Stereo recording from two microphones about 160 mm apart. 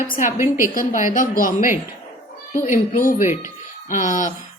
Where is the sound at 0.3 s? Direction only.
15° right (ahead or behind).